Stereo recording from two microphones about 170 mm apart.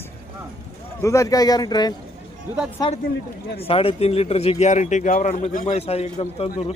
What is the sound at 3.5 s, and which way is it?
Speech, 35° left (ahead or behind).